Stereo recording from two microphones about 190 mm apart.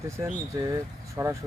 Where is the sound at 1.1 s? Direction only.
15° right (ahead or behind).